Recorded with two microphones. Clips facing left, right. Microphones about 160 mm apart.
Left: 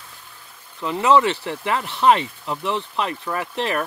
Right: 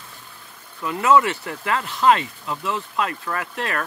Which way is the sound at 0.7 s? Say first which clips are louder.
Left 1 dB; 25° left (ahead or behind).